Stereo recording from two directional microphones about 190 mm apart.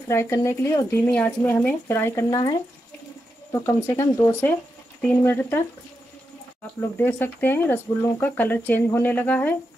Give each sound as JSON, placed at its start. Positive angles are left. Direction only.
{"t": 0.1, "sound": "speech", "side_deg": 15}
{"t": 3.6, "sound": "speech", "side_deg": 15}
{"t": 6.8, "sound": "speech", "side_deg": 10}